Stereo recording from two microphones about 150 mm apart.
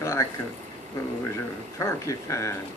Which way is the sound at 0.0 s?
20° left (ahead or behind).